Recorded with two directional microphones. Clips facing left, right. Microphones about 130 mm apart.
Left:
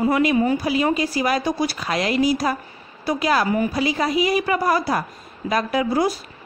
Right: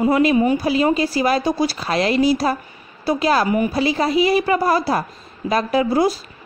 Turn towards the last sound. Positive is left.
turn(degrees=-25)  # may be behind; listen again after turning